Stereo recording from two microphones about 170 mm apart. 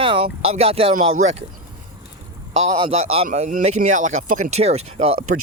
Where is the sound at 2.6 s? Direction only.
40° right (ahead or behind).